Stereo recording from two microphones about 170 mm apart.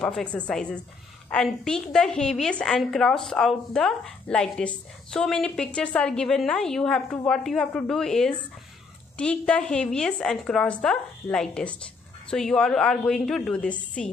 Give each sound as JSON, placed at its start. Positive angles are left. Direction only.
{"t": 0.0, "sound": "a woman's voice", "side_deg": 5}